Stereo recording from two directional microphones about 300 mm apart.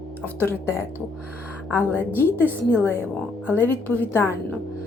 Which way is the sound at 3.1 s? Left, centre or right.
Centre.